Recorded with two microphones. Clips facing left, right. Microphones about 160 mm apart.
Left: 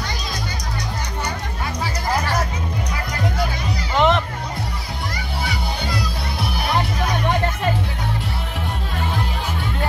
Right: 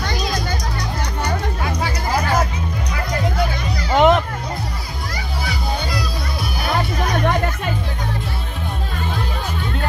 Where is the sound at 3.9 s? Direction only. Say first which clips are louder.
Right 4 dB; 45° right (ahead or behind).